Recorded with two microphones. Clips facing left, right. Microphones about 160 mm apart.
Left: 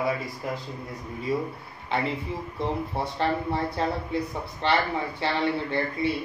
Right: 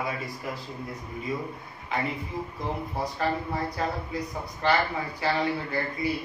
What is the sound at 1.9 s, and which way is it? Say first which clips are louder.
A man's voice: left 2 dB; 30° left (ahead or behind).